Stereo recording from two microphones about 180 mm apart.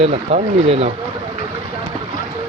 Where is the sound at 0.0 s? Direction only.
35° right (ahead or behind).